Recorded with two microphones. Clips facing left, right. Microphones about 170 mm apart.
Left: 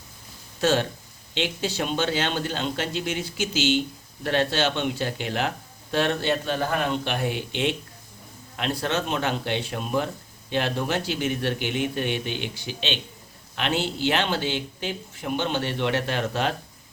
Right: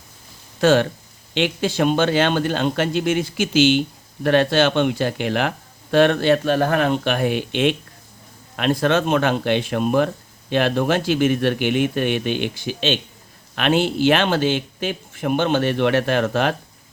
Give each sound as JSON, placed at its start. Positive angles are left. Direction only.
{"t": 0.6, "sound": "a man's voice", "side_deg": -60}
{"t": 14.8, "sound": "a man's voice", "side_deg": -65}